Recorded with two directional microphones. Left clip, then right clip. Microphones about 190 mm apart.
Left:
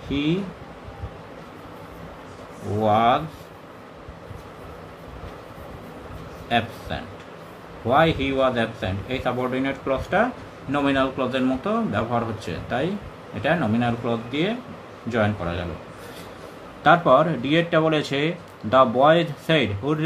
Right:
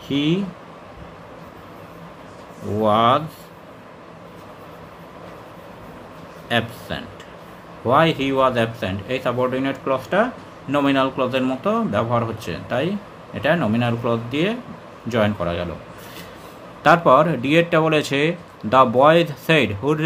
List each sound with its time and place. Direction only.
0.1 s speech: 40° right (ahead or behind)
2.8 s speech: 35° right (ahead or behind)
6.9 s speech: 40° right (ahead or behind)
16.8 s speech: 35° right (ahead or behind)